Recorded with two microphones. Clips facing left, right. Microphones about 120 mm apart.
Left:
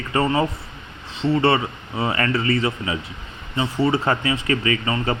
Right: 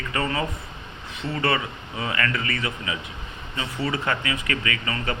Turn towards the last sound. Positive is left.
turn(degrees=30)  # may be behind; listen again after turning